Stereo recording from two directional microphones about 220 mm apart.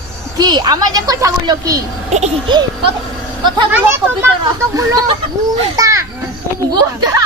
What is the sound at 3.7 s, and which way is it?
A woman's voice, 10° right (ahead or behind).